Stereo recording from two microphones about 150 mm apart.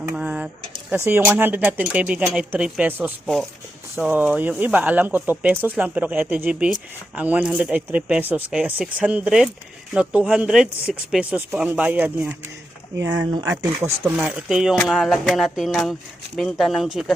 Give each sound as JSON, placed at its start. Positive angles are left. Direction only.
{"t": 0.1, "sound": "a sound", "side_deg": -5}
{"t": 0.9, "sound": "speech", "side_deg": -15}
{"t": 13.0, "sound": "speech", "side_deg": -20}
{"t": 14.0, "sound": "speech", "side_deg": -5}